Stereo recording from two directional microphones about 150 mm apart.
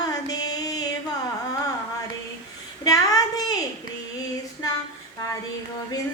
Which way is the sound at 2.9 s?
25° left (ahead or behind).